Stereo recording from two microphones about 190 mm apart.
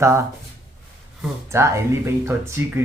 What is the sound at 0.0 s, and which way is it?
Speech, 15° right (ahead or behind).